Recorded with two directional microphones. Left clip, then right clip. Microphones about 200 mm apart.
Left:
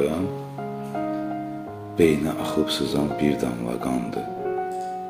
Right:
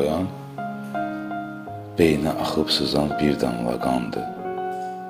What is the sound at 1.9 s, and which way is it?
Speech, 25° right (ahead or behind).